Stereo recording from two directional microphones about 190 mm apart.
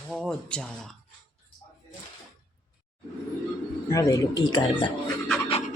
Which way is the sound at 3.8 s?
15° left (ahead or behind).